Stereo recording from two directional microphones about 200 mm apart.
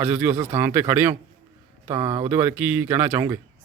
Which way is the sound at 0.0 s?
10° right (ahead or behind).